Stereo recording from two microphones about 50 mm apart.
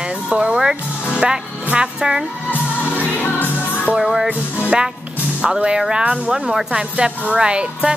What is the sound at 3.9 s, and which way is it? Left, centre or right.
Speech, centre.